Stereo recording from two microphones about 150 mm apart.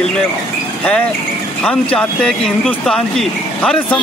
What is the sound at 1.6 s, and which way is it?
A man's voice, 5° left (ahead or behind).